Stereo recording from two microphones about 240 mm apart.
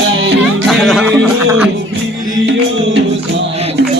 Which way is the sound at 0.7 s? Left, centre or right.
Centre.